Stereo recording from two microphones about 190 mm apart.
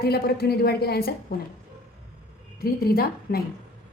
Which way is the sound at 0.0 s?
55° left (ahead or behind).